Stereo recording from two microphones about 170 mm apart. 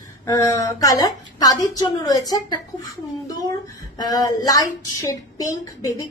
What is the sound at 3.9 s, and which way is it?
Speech, 20° left (ahead or behind).